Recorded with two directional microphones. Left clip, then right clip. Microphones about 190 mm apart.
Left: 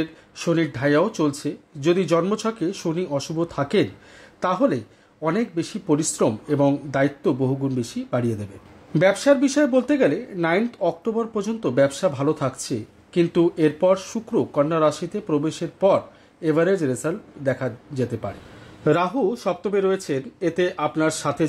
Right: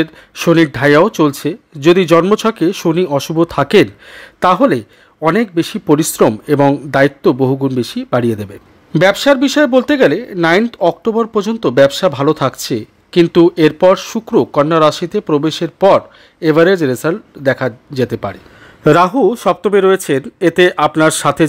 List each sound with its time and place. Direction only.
0.0 s speech: 40° right (ahead or behind)